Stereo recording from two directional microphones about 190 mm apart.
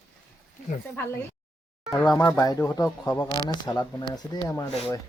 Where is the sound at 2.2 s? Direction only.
20° left (ahead or behind).